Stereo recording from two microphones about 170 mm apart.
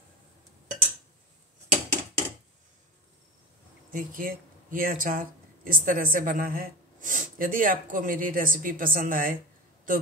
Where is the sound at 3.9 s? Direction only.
55° right (ahead or behind).